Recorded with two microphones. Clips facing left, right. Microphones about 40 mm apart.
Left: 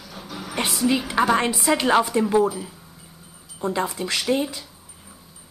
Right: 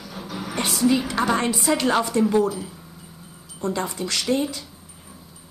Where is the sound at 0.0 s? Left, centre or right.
Centre.